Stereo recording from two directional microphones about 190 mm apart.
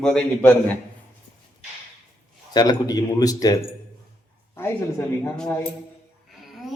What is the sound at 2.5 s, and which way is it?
A man's voice, 20° left (ahead or behind).